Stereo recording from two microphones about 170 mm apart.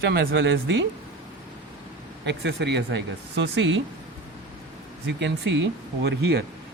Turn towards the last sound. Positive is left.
turn(degrees=-80)